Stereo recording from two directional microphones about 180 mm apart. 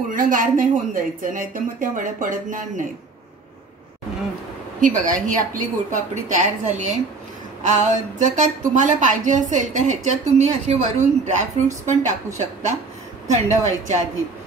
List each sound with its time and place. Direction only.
0.1 s speech: 50° right (ahead or behind)
4.7 s a woman's voice: 45° right (ahead or behind)